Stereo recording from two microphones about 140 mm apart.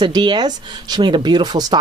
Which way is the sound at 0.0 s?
35° right (ahead or behind).